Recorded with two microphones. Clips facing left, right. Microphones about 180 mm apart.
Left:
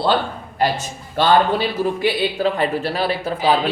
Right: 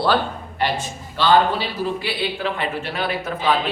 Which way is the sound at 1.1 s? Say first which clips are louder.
Left 1 dB; 50° left (ahead or behind).